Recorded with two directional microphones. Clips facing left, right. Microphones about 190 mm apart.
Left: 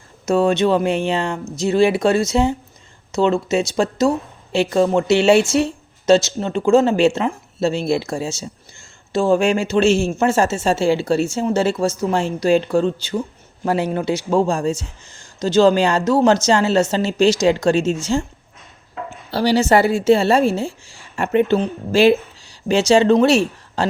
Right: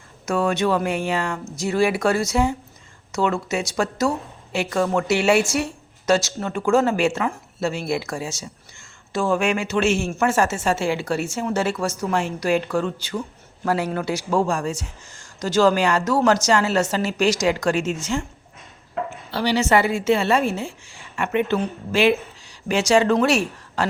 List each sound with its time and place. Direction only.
0.3 s speech: 25° left (ahead or behind)
19.3 s a woman's voice: 40° left (ahead or behind)